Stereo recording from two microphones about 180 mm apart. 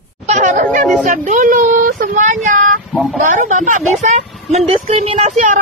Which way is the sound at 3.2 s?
45° right (ahead or behind).